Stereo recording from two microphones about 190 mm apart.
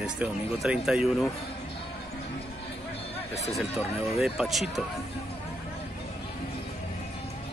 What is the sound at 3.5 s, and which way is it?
Speech, centre (ahead or behind).